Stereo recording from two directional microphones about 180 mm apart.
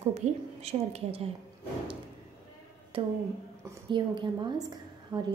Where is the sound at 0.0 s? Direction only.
35° right (ahead or behind).